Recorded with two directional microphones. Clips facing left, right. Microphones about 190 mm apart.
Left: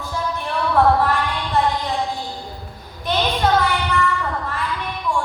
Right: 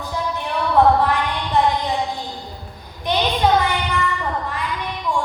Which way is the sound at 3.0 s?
15° right (ahead or behind).